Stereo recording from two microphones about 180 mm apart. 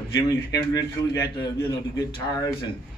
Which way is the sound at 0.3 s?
20° left (ahead or behind).